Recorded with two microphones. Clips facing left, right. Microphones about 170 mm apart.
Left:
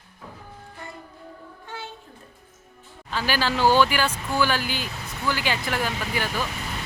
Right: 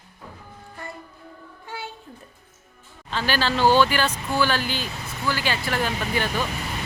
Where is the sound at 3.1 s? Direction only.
10° left (ahead or behind).